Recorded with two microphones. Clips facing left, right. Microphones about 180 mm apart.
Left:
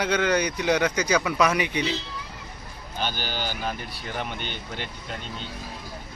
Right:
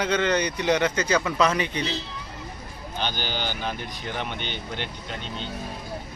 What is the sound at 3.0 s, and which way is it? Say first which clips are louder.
Speech: even; 10° left (ahead or behind).